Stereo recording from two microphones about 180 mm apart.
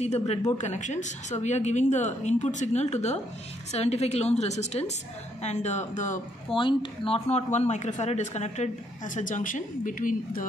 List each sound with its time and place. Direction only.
0.0 s speech: 35° left (ahead or behind)
6.5 s speech: 30° left (ahead or behind); by 10.4 s 50° left (ahead or behind)